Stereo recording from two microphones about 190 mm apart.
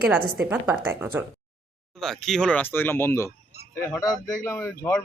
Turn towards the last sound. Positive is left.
turn(degrees=10)  # may be behind; listen again after turning